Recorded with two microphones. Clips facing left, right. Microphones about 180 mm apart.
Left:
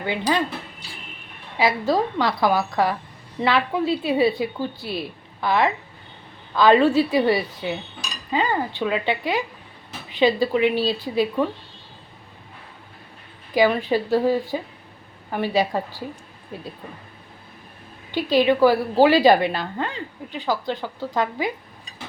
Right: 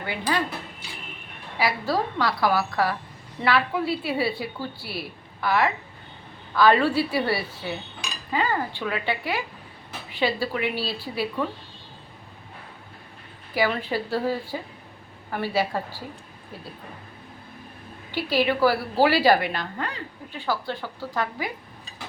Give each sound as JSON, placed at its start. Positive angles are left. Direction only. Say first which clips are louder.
{"t": 0.0, "sound": "a woman's voice", "louder": "left 4 dB", "side_deg": 20}
{"t": 1.5, "sound": "a woman's voice", "louder": "left 4 dB", "side_deg": 20}
{"t": 13.5, "sound": "a woman's voice", "louder": "left 6 dB", "side_deg": 15}
{"t": 18.1, "sound": "a woman's voice", "louder": "left 5 dB", "side_deg": 20}